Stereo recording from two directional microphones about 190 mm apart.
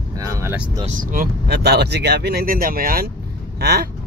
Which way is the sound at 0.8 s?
50° right (ahead or behind).